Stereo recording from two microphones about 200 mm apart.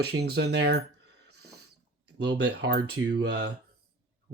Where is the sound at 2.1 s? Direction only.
55° right (ahead or behind).